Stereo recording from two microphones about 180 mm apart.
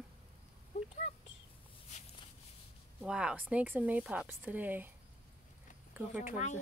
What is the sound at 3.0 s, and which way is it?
Speech, 5° right (ahead or behind).